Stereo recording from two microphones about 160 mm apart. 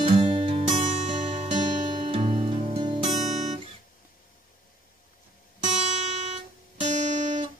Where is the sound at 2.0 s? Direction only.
35° right (ahead or behind).